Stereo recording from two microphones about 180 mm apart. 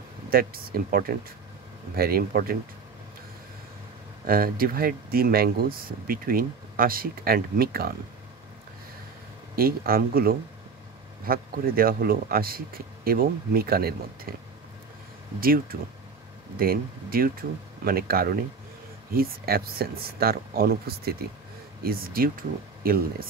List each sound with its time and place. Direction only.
0.3 s speech: 55° right (ahead or behind)
4.3 s speech: 55° right (ahead or behind)
9.6 s speech: 55° right (ahead or behind)
15.4 s speech: 55° right (ahead or behind)